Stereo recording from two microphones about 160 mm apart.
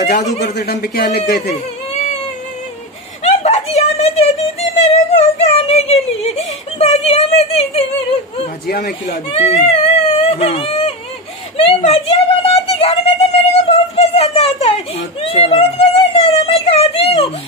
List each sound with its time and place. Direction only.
0.0 s a man's voice: 90° left; by 1.5 s 70° left (ahead or behind)
3.3 s a child's voice: 45° left (ahead or behind)
8.6 s speech: 75° left (ahead or behind)
9.4 s whimper: 45° left (ahead or behind)
11.5 s a woman's voice: 40° left (ahead or behind)
12.4 s music: 40° left (ahead or behind)
15.0 s whimper: 40° left (ahead or behind)